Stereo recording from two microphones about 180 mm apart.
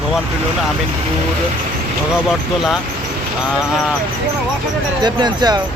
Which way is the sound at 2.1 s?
Centre (ahead or behind).